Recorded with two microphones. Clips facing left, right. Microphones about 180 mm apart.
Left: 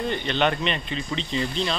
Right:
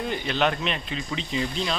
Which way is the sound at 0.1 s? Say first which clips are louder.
Even; 5° right (ahead or behind).